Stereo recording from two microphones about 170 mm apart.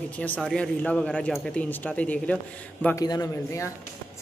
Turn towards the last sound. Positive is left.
turn(degrees=15)  # may be behind; listen again after turning